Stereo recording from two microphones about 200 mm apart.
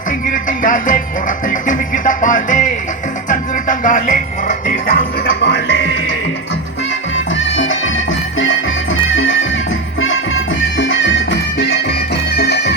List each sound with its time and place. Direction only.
0.3 s music: 40° left (ahead or behind)
7.3 s music: 70° left (ahead or behind)
10.8 s music: 65° left (ahead or behind)